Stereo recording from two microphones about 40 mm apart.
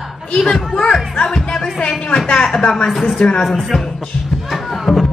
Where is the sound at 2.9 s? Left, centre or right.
Centre.